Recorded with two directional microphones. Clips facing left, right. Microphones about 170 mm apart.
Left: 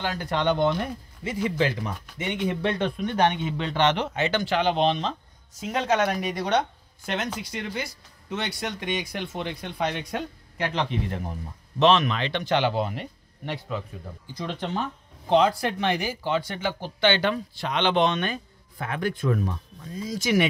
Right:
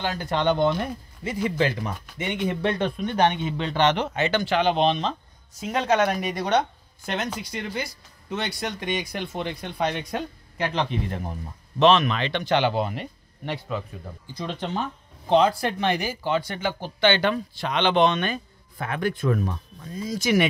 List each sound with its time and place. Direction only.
0.0 s speech: 25° right (ahead or behind)
0.7 s speech: 40° right (ahead or behind)
1.6 s speech: 55° right (ahead or behind)
3.0 s speech: 30° right (ahead or behind); by 5.1 s 85° right
5.7 s speech: 55° right (ahead or behind)
7.3 s speech: 35° right (ahead or behind)
11.8 s speech: 60° right (ahead or behind)
14.4 s speech: 20° right (ahead or behind); by 20.4 s 55° right (ahead or behind)